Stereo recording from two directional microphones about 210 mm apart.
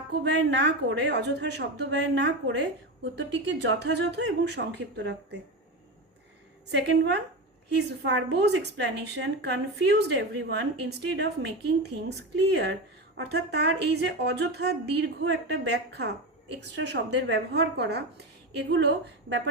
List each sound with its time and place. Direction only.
0.3 s a woman's voice: 55° right (ahead or behind)
6.7 s a woman's voice: 55° right (ahead or behind)